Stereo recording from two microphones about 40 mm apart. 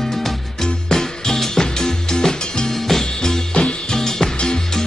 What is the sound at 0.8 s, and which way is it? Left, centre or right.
Music, centre.